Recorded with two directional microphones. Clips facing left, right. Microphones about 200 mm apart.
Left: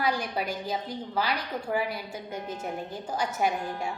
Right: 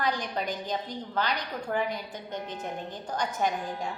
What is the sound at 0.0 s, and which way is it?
A woman's voice, 10° left (ahead or behind).